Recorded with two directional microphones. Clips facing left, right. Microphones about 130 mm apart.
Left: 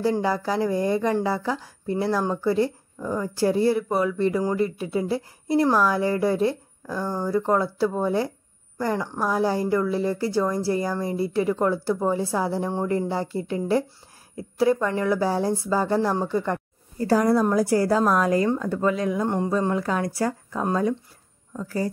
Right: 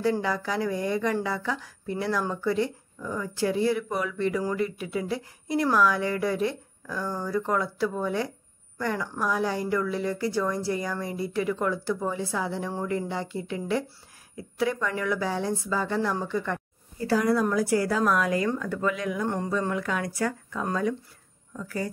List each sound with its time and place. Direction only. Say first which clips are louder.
0.2 s speech: left 4 dB; 35° left (ahead or behind)
19.2 s speech: left 4 dB; 20° left (ahead or behind)
19.7 s speech: left 4 dB; 35° left (ahead or behind)